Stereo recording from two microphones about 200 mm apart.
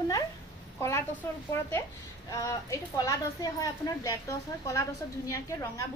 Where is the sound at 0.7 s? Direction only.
10° left (ahead or behind).